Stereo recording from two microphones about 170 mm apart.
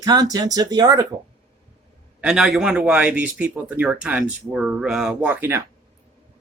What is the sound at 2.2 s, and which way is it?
Speech, centre (ahead or behind).